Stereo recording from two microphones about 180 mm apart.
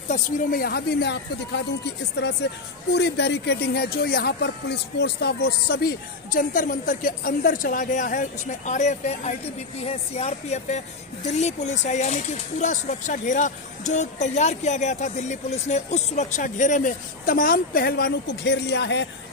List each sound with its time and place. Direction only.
0.1 s a woman's voice: 55° left (ahead or behind); by 19.0 s 70° left (ahead or behind)